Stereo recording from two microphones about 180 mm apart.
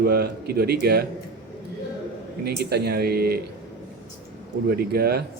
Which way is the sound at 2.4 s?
65° right (ahead or behind).